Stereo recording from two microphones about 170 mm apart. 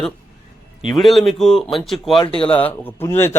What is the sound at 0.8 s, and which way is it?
A man's voice, centre (ahead or behind).